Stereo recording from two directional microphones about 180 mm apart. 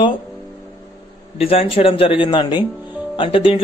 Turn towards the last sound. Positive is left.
turn(degrees=30)  # may be behind; listen again after turning